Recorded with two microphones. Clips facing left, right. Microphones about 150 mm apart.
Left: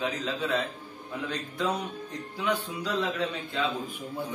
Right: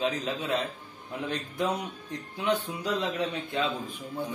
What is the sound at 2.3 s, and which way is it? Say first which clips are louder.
A man's voice: right 1 dB; 20° right (ahead or behind).